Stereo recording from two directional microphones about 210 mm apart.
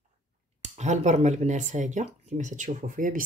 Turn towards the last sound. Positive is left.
turn(degrees=-40)  # may be behind; listen again after turning